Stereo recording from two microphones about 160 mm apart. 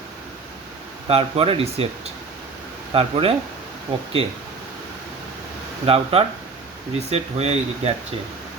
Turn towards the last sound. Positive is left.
turn(degrees=-40)  # may be behind; listen again after turning